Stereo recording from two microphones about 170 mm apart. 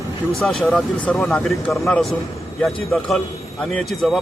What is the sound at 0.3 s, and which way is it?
A man's voice, centre (ahead or behind).